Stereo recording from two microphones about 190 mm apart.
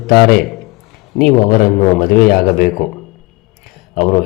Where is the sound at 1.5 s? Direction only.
45° left (ahead or behind).